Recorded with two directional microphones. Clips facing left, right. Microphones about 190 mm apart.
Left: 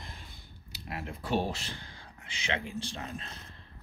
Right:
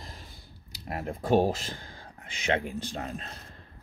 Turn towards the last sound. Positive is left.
turn(degrees=-40)  # may be behind; listen again after turning